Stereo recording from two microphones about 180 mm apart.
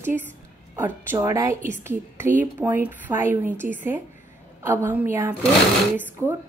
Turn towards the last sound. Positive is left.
turn(degrees=-15)  # may be behind; listen again after turning